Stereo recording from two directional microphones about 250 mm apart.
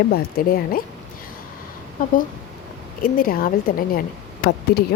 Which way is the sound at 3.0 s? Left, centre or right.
Left.